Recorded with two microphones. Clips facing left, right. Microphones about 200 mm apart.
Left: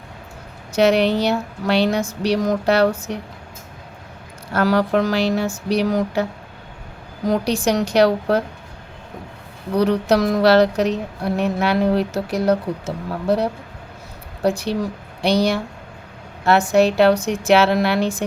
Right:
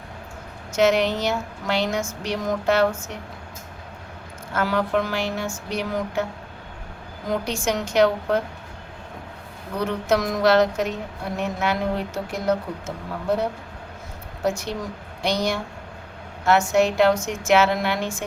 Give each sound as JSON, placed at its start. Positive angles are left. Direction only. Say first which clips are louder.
{"t": 0.8, "sound": "speech", "louder": "left 4 dB", "side_deg": 35}
{"t": 4.5, "sound": "speech", "louder": "left 5 dB", "side_deg": 35}
{"t": 7.3, "sound": "speech", "louder": "left 6 dB", "side_deg": 35}
{"t": 9.7, "sound": "speech", "louder": "left 6 dB", "side_deg": 35}